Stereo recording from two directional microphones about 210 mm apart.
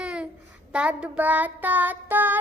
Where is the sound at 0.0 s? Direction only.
5° right (ahead or behind).